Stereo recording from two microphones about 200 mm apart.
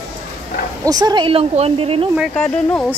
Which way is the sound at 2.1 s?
Centre (ahead or behind).